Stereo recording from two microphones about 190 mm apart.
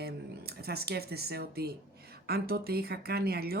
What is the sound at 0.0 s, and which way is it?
Speech, 55° right (ahead or behind).